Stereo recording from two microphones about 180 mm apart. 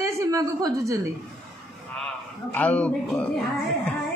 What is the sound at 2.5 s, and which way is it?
Speech, 5° left (ahead or behind).